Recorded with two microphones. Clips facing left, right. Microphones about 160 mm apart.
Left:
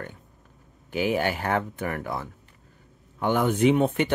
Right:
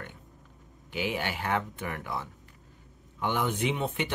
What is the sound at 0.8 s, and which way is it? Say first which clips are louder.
Speech: left 7 dB; 45° left (ahead or behind).